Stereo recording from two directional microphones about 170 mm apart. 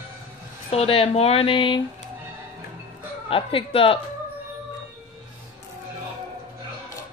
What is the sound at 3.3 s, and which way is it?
Speech, 30° left (ahead or behind).